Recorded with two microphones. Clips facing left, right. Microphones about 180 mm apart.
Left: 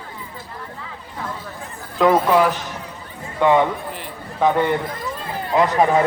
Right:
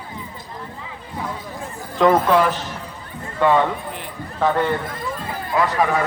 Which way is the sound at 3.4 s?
15° left (ahead or behind).